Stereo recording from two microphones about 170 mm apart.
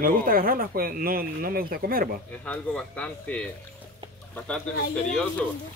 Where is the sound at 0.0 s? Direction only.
55° right (ahead or behind).